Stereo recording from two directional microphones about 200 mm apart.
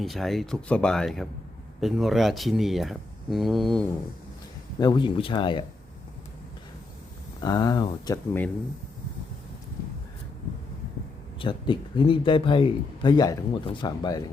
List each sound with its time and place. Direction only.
0.0 s speech: centre (ahead or behind)
4.8 s a man's voice: 20° left (ahead or behind)
7.4 s a man's voice: 20° left (ahead or behind)
11.3 s a man's voice: 25° left (ahead or behind)